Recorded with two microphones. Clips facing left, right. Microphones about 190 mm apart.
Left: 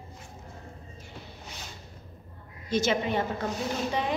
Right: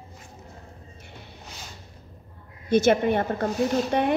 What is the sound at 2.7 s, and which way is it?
A woman's voice, 55° right (ahead or behind).